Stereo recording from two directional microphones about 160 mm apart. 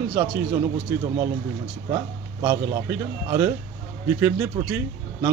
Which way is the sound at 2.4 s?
15° right (ahead or behind).